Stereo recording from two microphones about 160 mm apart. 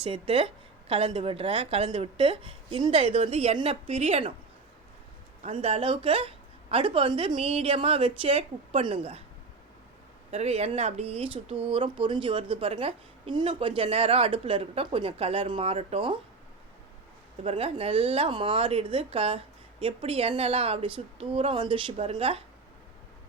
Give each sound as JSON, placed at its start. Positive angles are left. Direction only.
{"t": 0.0, "sound": "speech", "side_deg": -35}
{"t": 5.4, "sound": "speech", "side_deg": -40}
{"t": 10.3, "sound": "speech", "side_deg": -40}
{"t": 17.4, "sound": "speech", "side_deg": -35}